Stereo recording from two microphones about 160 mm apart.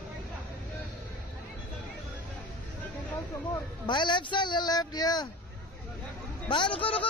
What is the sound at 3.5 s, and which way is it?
Speech, 30° left (ahead or behind).